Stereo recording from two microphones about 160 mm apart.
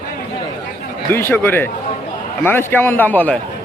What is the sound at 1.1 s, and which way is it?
Speech, 15° left (ahead or behind).